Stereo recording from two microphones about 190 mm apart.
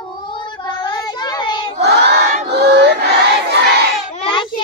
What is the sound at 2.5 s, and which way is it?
Battle cry, 65° right (ahead or behind).